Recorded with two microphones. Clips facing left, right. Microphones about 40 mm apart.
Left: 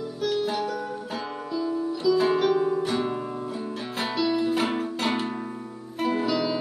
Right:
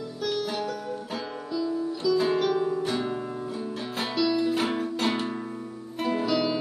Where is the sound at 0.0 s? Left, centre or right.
Centre.